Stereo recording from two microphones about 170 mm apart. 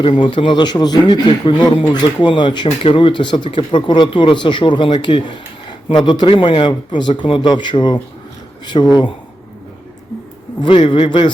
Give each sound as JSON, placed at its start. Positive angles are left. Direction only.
{"t": 0.0, "sound": "speech", "side_deg": 30}
{"t": 10.6, "sound": "speech", "side_deg": 30}